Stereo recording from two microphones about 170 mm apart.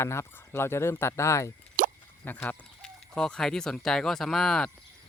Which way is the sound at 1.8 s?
50° right (ahead or behind).